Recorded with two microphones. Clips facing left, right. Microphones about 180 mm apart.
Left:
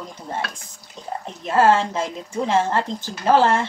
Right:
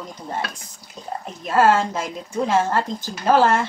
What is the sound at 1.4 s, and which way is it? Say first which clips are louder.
A woman's voice: even; 25° left (ahead or behind).